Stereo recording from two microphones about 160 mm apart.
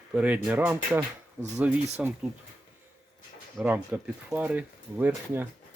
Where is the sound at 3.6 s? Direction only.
10° right (ahead or behind).